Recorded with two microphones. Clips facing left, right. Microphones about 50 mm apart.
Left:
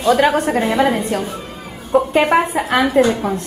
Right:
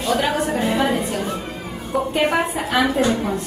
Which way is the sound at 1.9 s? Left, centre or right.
Left.